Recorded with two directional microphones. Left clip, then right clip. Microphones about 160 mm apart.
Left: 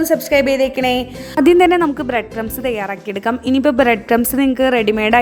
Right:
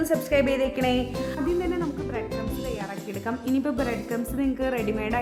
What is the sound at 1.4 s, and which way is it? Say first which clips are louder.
Speech: left 18 dB; 90° left.